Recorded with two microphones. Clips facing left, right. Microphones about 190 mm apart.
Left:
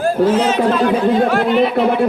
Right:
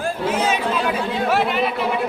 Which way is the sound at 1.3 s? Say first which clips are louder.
Left 6 dB; 5° right (ahead or behind).